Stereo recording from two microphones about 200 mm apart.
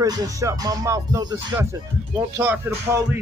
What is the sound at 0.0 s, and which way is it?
Speech, 15° right (ahead or behind).